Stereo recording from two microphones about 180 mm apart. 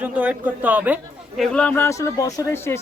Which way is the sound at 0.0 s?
5° right (ahead or behind).